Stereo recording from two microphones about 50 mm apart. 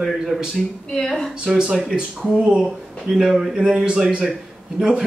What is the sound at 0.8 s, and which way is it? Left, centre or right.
Speech, centre.